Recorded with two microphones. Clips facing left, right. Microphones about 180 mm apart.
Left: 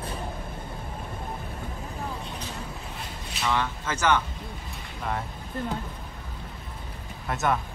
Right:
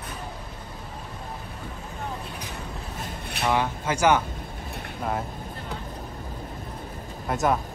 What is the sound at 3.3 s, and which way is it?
Vehicle, 60° right (ahead or behind).